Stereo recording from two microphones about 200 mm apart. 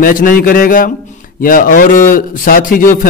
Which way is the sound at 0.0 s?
45° left (ahead or behind).